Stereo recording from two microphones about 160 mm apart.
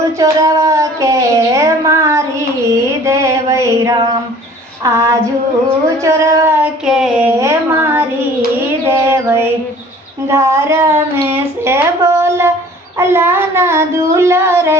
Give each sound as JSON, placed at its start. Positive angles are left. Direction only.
{"t": 0.2, "sound": "a sound", "side_deg": -20}
{"t": 5.8, "sound": "speech", "side_deg": -20}
{"t": 6.8, "sound": "a sound", "side_deg": -5}
{"t": 7.3, "sound": "speech", "side_deg": -15}
{"t": 9.0, "sound": "female singing", "side_deg": -15}
{"t": 10.2, "sound": "speech", "side_deg": -15}